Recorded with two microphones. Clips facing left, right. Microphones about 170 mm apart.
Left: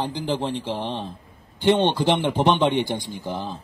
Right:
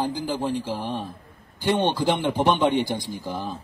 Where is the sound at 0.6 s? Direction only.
25° left (ahead or behind).